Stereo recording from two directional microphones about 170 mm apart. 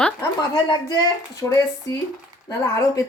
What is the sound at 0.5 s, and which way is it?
Speech, 25° left (ahead or behind).